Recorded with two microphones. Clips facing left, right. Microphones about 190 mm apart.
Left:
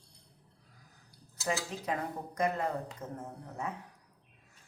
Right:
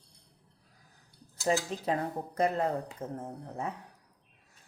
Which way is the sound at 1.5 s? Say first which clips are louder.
Right 5 dB; 30° right (ahead or behind).